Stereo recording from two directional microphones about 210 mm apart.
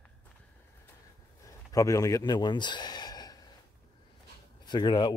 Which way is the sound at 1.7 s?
15° left (ahead or behind).